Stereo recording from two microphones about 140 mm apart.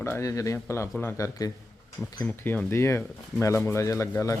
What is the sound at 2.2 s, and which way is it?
Speech, 10° left (ahead or behind).